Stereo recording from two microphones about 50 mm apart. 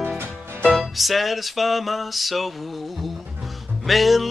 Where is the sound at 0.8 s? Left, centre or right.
Centre.